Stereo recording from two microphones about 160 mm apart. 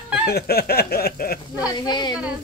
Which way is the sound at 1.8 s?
25° left (ahead or behind).